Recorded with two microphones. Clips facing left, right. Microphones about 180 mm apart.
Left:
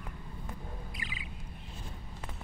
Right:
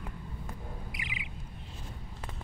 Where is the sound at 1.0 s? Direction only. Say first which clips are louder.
Right 1 dB; 15° right (ahead or behind).